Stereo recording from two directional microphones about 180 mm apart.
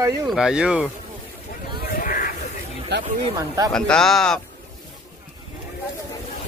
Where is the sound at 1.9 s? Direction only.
50° left (ahead or behind).